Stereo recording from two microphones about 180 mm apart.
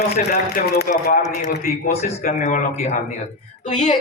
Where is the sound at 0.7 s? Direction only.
55° left (ahead or behind).